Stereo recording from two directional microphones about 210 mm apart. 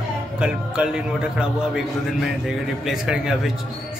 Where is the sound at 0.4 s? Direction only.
5° right (ahead or behind).